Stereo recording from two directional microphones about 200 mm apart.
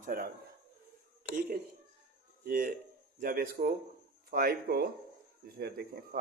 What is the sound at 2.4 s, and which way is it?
A man's voice, 45° right (ahead or behind).